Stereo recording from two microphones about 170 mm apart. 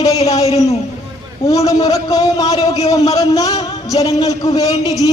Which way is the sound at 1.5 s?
20° left (ahead or behind).